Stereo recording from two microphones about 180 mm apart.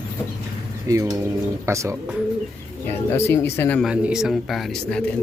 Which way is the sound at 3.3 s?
15° left (ahead or behind).